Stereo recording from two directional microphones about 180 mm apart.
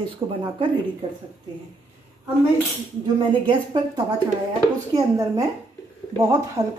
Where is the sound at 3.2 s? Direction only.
25° right (ahead or behind).